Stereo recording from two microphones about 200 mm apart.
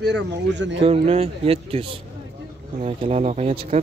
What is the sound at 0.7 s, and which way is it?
Speech, 30° right (ahead or behind).